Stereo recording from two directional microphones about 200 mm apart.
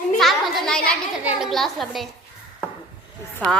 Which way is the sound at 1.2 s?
Centre (ahead or behind).